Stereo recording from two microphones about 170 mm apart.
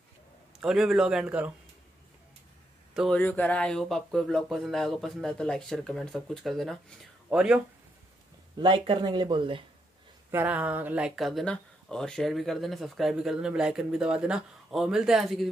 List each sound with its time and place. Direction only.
0.6 s speech: centre (ahead or behind)
2.9 s a sound: 5° right (ahead or behind)
3.2 s speech: 10° left (ahead or behind)
8.5 s speech: 30° right (ahead or behind)
10.3 s speech: 10° right (ahead or behind)